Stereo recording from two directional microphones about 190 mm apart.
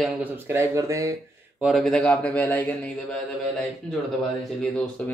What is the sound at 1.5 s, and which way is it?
A man's voice, centre (ahead or behind).